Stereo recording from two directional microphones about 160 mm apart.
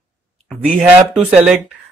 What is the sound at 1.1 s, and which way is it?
Speech, 5° right (ahead or behind).